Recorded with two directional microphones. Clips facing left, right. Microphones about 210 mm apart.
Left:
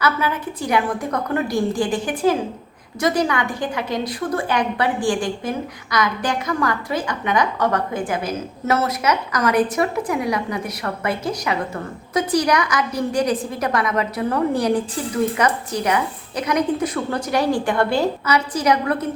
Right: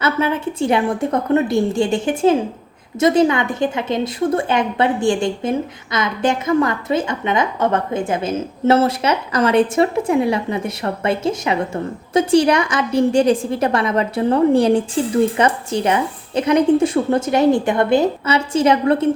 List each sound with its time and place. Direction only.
0.0 s a woman's voice: 25° right (ahead or behind)